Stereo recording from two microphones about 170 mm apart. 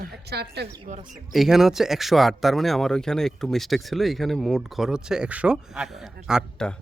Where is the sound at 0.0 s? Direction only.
75° right (ahead or behind).